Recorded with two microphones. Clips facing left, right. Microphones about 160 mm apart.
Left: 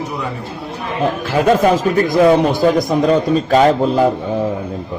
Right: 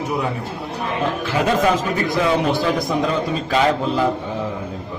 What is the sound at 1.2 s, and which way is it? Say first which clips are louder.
A man's voice: left 6 dB; 50° left (ahead or behind).